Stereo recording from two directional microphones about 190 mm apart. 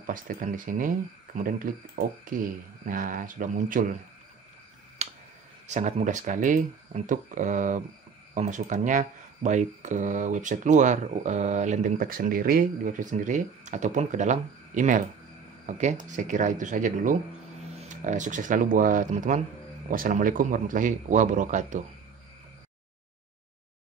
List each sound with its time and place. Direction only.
0.0 s speech: 45° right (ahead or behind)
5.0 s finger snapping: 35° right (ahead or behind)
5.7 s speech: 35° right (ahead or behind)